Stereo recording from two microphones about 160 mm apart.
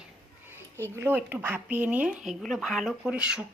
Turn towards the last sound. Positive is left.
turn(degrees=-5)  # may be behind; listen again after turning